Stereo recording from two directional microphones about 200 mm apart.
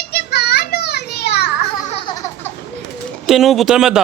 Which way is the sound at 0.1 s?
55° left (ahead or behind).